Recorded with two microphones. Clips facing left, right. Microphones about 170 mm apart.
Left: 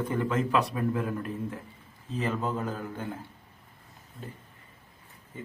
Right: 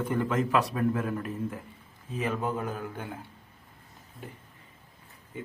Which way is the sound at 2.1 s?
10° right (ahead or behind).